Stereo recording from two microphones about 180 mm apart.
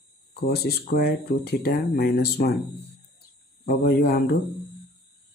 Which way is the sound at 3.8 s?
60° left (ahead or behind).